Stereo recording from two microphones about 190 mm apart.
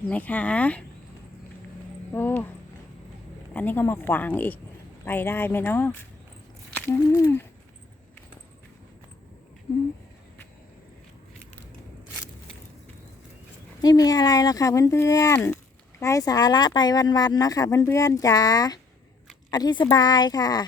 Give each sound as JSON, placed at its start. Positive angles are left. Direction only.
{"t": 0.1, "sound": "speech", "side_deg": 10}
{"t": 2.1, "sound": "speech", "side_deg": 10}
{"t": 3.5, "sound": "speech", "side_deg": 10}
{"t": 13.8, "sound": "speech", "side_deg": 20}